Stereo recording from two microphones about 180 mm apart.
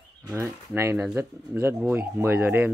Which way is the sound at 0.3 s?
15° right (ahead or behind).